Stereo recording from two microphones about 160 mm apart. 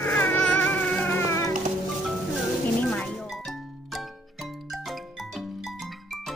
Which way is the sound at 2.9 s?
5° left (ahead or behind).